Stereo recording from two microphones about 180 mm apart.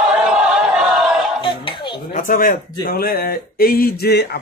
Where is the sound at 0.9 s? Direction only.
Centre (ahead or behind).